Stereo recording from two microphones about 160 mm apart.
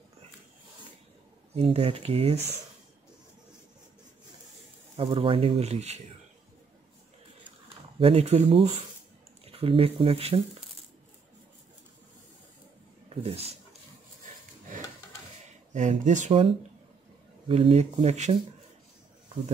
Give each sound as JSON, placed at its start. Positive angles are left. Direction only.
{"t": 1.5, "sound": "speech", "side_deg": -40}
{"t": 4.9, "sound": "speech", "side_deg": -35}
{"t": 8.0, "sound": "speech", "side_deg": -40}
{"t": 13.1, "sound": "speech", "side_deg": -40}
{"t": 16.0, "sound": "speech", "side_deg": -50}